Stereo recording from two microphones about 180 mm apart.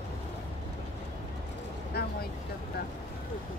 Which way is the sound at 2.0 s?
60° left (ahead or behind).